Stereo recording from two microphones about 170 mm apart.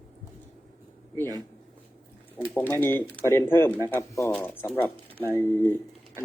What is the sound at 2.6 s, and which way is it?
Speech, 10° left (ahead or behind).